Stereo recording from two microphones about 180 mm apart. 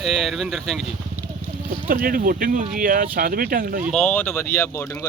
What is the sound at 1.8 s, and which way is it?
Speech, 50° right (ahead or behind).